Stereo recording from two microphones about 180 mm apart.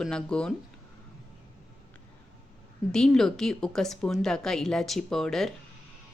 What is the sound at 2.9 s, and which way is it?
A woman's voice, 5° left (ahead or behind).